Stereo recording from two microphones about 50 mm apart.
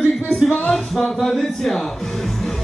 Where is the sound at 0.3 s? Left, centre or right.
Left.